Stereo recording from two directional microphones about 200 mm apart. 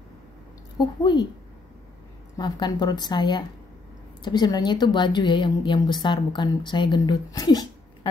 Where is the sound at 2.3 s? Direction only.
20° left (ahead or behind).